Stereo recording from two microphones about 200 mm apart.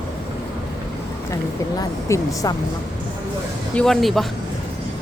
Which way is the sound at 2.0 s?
15° left (ahead or behind).